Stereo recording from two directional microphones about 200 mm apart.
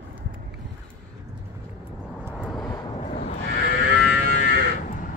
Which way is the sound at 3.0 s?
35° left (ahead or behind).